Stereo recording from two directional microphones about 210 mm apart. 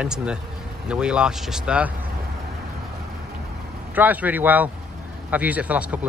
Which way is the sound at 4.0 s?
10° right (ahead or behind).